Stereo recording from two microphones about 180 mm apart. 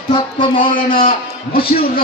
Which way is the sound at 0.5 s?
50° left (ahead or behind).